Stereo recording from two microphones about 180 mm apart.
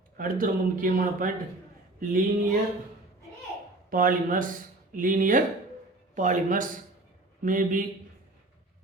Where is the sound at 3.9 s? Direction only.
50° right (ahead or behind).